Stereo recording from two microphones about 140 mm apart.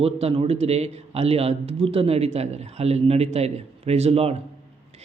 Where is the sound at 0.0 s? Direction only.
45° right (ahead or behind).